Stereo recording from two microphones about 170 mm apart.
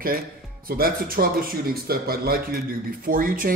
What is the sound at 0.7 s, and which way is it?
Speech, 60° right (ahead or behind).